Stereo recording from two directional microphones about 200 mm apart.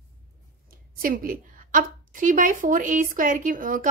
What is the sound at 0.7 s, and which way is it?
A woman's voice, 45° right (ahead or behind).